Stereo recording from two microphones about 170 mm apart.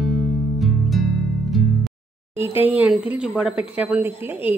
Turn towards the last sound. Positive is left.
turn(degrees=-10)  # may be behind; listen again after turning